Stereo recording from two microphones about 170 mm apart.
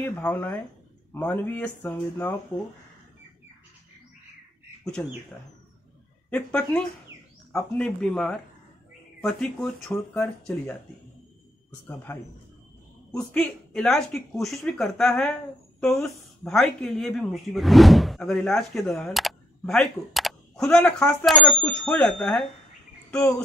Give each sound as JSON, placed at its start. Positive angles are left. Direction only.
{"t": 0.0, "sound": "speech", "side_deg": 10}
{"t": 6.3, "sound": "a woman's voice", "side_deg": 5}
{"t": 11.9, "sound": "speech", "side_deg": 15}
{"t": 13.3, "sound": "a woman's voice", "side_deg": 5}